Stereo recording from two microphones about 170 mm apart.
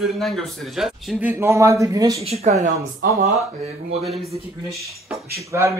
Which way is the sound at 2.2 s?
40° right (ahead or behind).